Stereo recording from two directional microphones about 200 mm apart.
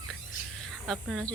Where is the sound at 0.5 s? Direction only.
5° left (ahead or behind).